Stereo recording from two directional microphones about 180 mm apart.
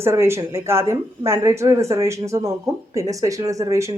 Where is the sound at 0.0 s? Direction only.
15° right (ahead or behind).